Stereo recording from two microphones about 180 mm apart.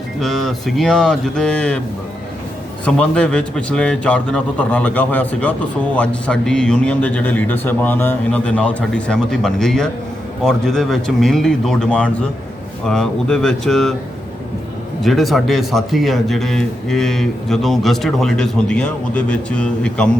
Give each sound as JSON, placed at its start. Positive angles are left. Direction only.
{"t": 0.2, "sound": "a man's voice", "side_deg": 0}
{"t": 2.8, "sound": "a man's voice", "side_deg": 5}
{"t": 15.0, "sound": "a man's voice", "side_deg": 0}